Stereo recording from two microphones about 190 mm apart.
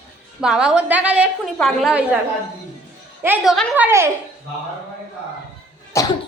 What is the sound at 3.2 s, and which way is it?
Speech, 5° right (ahead or behind).